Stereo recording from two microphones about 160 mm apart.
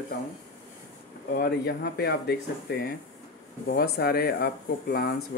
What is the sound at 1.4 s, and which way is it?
Speech, 80° left.